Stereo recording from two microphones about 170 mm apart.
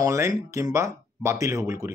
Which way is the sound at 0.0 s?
15° right (ahead or behind).